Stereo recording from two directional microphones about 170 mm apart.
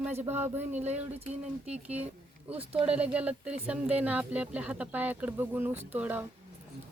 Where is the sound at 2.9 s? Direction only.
5° right (ahead or behind).